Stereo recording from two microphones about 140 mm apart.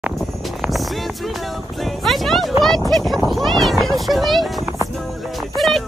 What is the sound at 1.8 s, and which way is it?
Speech, centre (ahead or behind).